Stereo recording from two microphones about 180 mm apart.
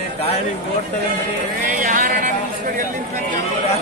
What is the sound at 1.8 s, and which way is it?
Vehicle, 45° right (ahead or behind).